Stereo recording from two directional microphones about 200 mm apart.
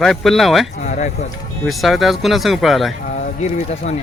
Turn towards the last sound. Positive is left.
turn(degrees=35)  # may be behind; listen again after turning